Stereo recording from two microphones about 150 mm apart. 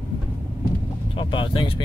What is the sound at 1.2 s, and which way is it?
Speech, 35° left (ahead or behind).